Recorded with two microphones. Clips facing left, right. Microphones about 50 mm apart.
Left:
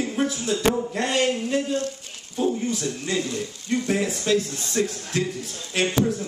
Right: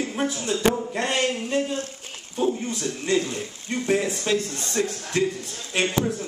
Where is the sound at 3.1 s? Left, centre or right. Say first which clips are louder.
Right 2 dB; right.